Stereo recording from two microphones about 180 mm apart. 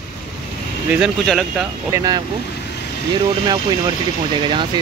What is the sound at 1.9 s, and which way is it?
Speech, 20° right (ahead or behind).